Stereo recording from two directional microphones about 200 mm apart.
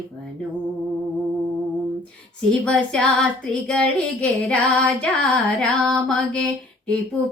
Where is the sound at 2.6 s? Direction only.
5° left (ahead or behind).